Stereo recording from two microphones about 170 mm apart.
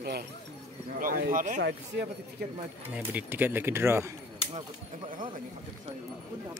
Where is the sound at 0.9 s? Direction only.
55° right (ahead or behind).